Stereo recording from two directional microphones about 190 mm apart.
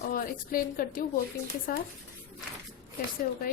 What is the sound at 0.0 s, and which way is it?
A woman's voice, 50° left (ahead or behind).